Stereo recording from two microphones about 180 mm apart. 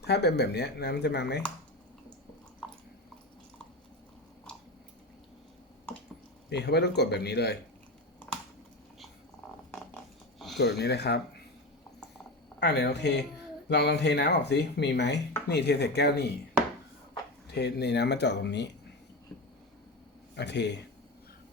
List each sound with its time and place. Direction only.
0.0 s speech: 65° left (ahead or behind)
6.5 s speech: 65° left (ahead or behind)
9.7 s a sound: 5° left (ahead or behind)
10.6 s speech: 65° left (ahead or behind)
12.5 s speech: 70° left (ahead or behind)
17.5 s speech: 65° left (ahead or behind)
20.3 s speech: 70° left (ahead or behind)